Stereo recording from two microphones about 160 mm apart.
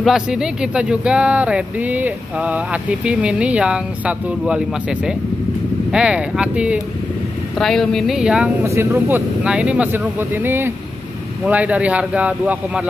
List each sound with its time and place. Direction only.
0.0 s speech: 5° right (ahead or behind)
8.6 s speech: 15° right (ahead or behind)